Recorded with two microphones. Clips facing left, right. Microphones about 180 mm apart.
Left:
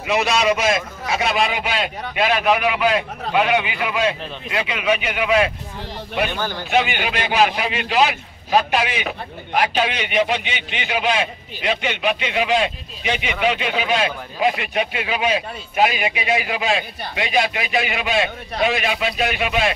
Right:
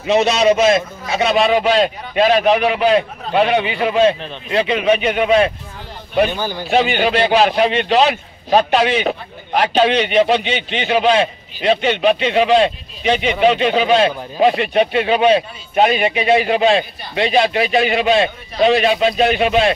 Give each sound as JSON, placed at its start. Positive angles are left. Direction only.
{"t": 0.0, "sound": "speech", "side_deg": -30}
{"t": 6.7, "sound": "speech", "side_deg": -35}
{"t": 10.4, "sound": "a man's voice", "side_deg": 10}
{"t": 10.8, "sound": "speech", "side_deg": -35}